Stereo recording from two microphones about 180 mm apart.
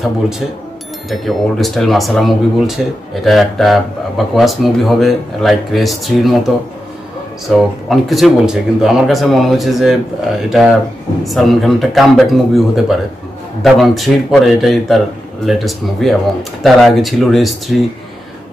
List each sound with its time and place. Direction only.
1.1 s speech: centre (ahead or behind)
7.4 s speech: centre (ahead or behind)